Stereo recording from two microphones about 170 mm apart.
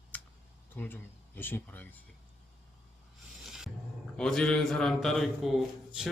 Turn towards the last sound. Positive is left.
turn(degrees=0)  # may be behind; listen again after turning